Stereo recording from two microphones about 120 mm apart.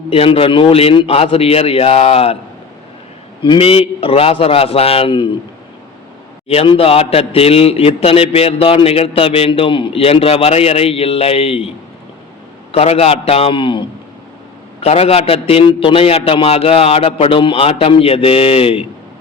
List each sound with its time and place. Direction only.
0.1 s a man's voice: 50° left (ahead or behind)
3.4 s a man's voice: 45° left (ahead or behind)
6.5 s a man's voice: 55° left (ahead or behind)
12.7 s a man's voice: 60° left (ahead or behind)
14.8 s a man's voice: 55° left (ahead or behind)